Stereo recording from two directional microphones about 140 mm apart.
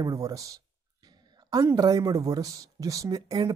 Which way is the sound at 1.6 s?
25° right (ahead or behind).